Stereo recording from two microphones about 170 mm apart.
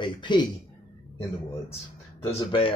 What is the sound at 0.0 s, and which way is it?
Speech, 25° left (ahead or behind).